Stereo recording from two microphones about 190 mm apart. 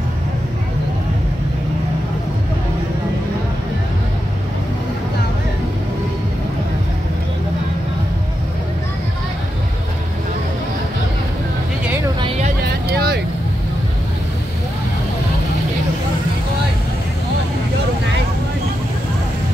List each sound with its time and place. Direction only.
12.6 s vehicle: 55° right (ahead or behind)